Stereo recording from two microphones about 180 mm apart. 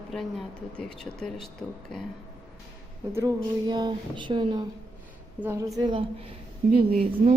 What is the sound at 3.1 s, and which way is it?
Speech, 15° right (ahead or behind).